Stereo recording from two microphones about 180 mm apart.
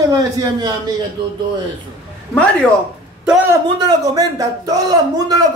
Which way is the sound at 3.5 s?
20° right (ahead or behind).